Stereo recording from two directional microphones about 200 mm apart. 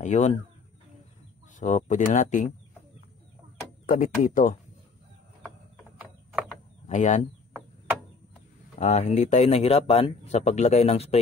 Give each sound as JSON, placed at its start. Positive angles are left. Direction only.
{"t": 0.0, "sound": "speech", "side_deg": 35}
{"t": 1.6, "sound": "speech", "side_deg": 40}
{"t": 3.8, "sound": "speech", "side_deg": 45}
{"t": 6.9, "sound": "speech", "side_deg": 35}
{"t": 8.7, "sound": "speech", "side_deg": 35}